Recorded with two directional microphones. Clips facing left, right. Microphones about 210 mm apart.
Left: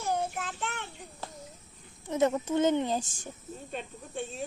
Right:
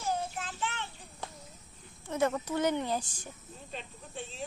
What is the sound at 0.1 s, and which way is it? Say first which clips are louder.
Child singing: left 3 dB; 55° left (ahead or behind).